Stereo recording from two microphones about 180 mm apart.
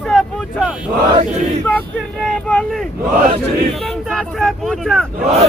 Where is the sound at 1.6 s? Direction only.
5° left (ahead or behind).